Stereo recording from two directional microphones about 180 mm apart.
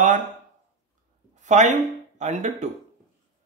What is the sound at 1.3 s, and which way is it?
Speech, 40° right (ahead or behind).